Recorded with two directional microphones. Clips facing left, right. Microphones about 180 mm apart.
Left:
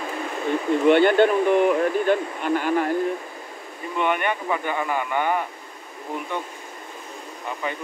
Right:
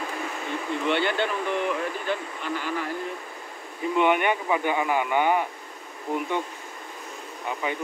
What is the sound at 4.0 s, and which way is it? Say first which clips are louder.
Speech: right 1 dB; 15° right (ahead or behind).